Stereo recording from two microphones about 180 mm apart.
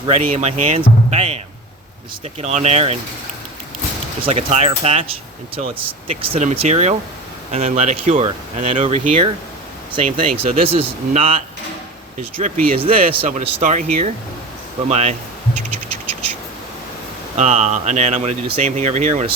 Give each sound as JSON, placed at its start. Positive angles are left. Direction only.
{"t": 0.1, "sound": "speech", "side_deg": -40}
{"t": 2.4, "sound": "speech", "side_deg": -40}
{"t": 4.2, "sound": "speech", "side_deg": -35}
{"t": 12.4, "sound": "speech", "side_deg": -50}
{"t": 13.1, "sound": "speech", "side_deg": -40}
{"t": 17.3, "sound": "speech", "side_deg": -40}